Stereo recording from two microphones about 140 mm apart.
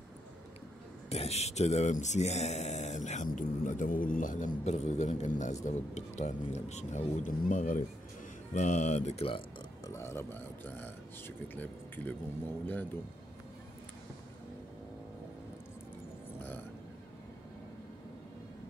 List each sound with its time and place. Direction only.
1.1 s speech: 45° left (ahead or behind); by 4.5 s 70° left (ahead or behind)
4.6 s speech: 55° left (ahead or behind); by 7.8 s 75° left (ahead or behind)
8.5 s speech: 60° left (ahead or behind)
9.8 s a man's voice: 20° left (ahead or behind)